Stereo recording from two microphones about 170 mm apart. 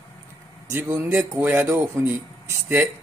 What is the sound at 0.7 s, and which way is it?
Speech, 15° right (ahead or behind).